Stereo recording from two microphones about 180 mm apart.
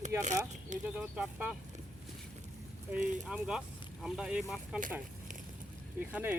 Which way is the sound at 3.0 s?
45° right (ahead or behind).